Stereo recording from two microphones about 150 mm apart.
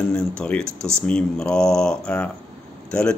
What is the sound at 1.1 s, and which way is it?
Speech, 5° left (ahead or behind).